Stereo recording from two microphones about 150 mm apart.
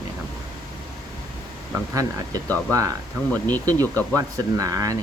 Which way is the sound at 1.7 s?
20° right (ahead or behind).